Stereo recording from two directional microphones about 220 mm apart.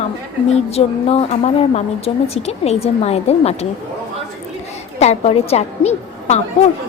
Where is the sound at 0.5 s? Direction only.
30° left (ahead or behind).